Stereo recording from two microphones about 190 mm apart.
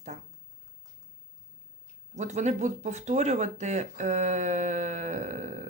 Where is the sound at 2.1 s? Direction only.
35° right (ahead or behind).